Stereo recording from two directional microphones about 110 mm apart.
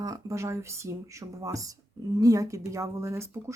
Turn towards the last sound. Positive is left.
turn(degrees=-25)  # may be behind; listen again after turning